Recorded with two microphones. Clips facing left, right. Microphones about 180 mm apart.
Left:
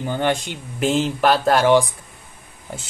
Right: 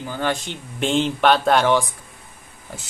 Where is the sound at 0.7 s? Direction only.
5° left (ahead or behind).